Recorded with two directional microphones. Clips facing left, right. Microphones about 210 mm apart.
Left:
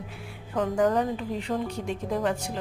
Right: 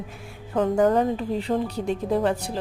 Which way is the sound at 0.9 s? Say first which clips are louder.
Right 4 dB; 35° right (ahead or behind).